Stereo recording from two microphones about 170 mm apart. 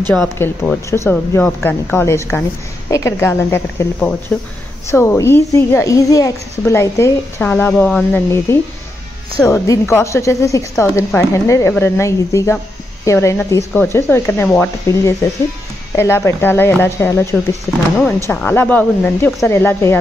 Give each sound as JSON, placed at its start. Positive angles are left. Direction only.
{"t": 0.1, "sound": "a woman's voice", "side_deg": 5}
{"t": 4.3, "sound": "speech", "side_deg": 5}
{"t": 4.8, "sound": "a woman's voice", "side_deg": 15}